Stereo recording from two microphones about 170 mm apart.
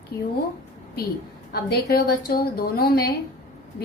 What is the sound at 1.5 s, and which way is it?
A woman's voice, 65° left (ahead or behind).